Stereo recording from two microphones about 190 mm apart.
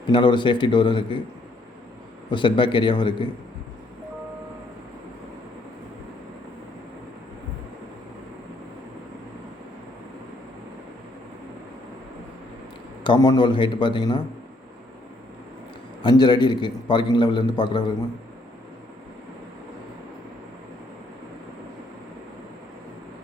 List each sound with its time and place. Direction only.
0.1 s a man's voice: 25° left (ahead or behind)
2.3 s a man's voice: 25° left (ahead or behind)
13.1 s a man's voice: 20° left (ahead or behind)
16.0 s a man's voice: 25° left (ahead or behind)